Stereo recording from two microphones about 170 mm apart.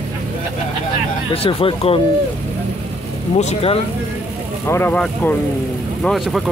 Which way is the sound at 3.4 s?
40° left (ahead or behind).